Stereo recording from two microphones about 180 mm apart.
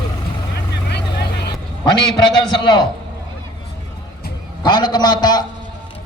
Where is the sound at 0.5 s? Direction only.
65° left (ahead or behind).